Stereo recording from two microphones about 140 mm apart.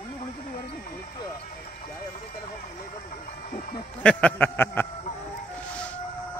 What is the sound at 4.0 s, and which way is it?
Speech, 10° left (ahead or behind).